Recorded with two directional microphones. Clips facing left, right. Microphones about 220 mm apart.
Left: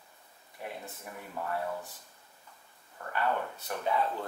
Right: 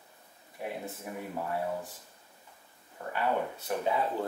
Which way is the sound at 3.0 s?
10° right (ahead or behind).